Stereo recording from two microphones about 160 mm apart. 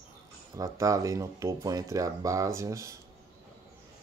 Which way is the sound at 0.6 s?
20° right (ahead or behind).